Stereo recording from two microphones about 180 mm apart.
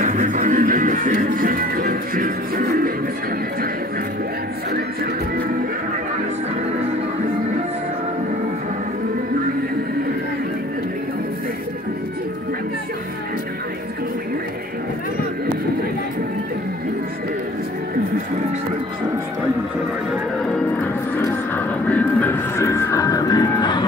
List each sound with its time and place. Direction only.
0.0 s music: 45° right (ahead or behind)
20.5 s music: 10° left (ahead or behind); by 23.9 s 25° left (ahead or behind)